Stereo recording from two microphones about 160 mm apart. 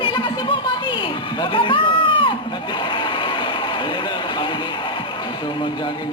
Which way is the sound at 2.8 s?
30° left (ahead or behind).